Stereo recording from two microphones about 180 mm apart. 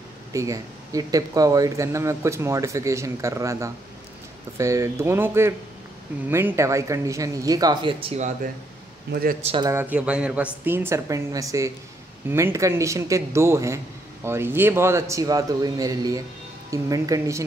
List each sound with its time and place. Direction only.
0.3 s speech: 15° right (ahead or behind); by 8.3 s 35° right (ahead or behind)
9.1 s a man's voice: 55° right (ahead or behind)
9.4 s a man's voice: 30° right (ahead or behind)
9.7 s a woman's voice: 10° right (ahead or behind)